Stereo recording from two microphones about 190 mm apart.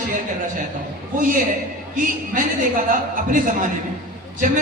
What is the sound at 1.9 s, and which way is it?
A man's voice, 45° right (ahead or behind).